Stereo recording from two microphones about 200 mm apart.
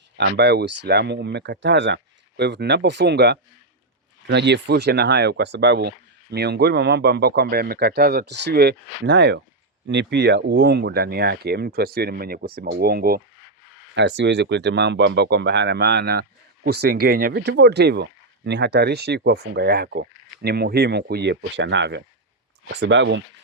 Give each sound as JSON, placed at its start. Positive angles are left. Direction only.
{"t": 0.2, "sound": "speech", "side_deg": -60}
{"t": 13.9, "sound": "speech", "side_deg": -60}